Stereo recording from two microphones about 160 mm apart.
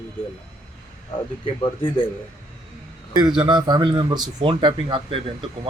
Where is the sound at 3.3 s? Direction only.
30° right (ahead or behind).